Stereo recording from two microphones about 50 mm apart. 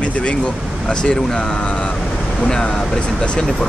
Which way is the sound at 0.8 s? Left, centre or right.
Centre.